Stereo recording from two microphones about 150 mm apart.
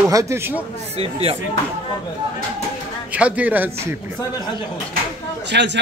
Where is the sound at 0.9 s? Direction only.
40° right (ahead or behind).